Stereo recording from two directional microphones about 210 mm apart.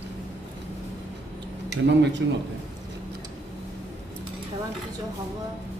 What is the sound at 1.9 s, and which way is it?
Speech, 55° right (ahead or behind).